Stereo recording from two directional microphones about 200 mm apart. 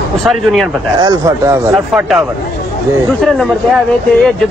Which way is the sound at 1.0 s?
15° right (ahead or behind).